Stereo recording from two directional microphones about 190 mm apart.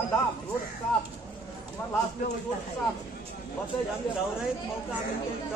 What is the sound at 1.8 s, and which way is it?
Speech, 10° left (ahead or behind).